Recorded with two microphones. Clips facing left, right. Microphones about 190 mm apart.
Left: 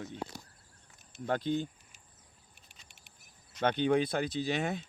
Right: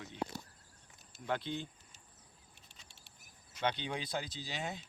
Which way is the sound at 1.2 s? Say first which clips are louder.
Left 6 dB; 40° left (ahead or behind).